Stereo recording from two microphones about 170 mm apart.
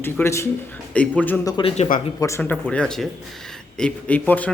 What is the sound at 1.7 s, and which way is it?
Speech, 40° left (ahead or behind).